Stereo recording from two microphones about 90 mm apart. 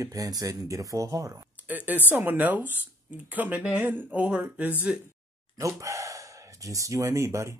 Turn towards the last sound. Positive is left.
turn(degrees=-35)  # may be behind; listen again after turning